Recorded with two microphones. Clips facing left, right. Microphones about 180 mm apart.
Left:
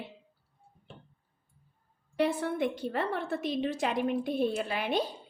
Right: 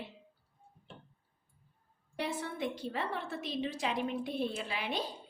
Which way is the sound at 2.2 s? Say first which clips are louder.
Left 8 dB; 60° left (ahead or behind).